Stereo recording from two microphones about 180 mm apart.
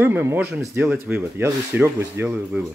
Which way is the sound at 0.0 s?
10° right (ahead or behind).